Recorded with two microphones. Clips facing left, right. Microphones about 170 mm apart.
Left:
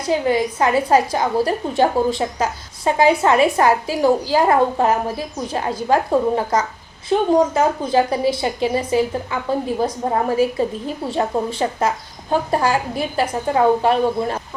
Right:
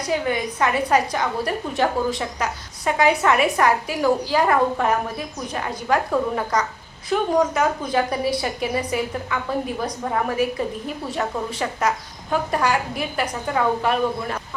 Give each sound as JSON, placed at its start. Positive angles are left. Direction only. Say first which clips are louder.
{"t": 0.0, "sound": "a woman's voice", "louder": "left 5 dB", "side_deg": 30}